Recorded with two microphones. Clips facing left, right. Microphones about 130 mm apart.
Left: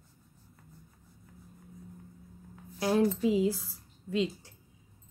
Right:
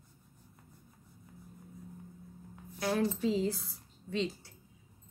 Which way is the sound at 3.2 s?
10° left (ahead or behind).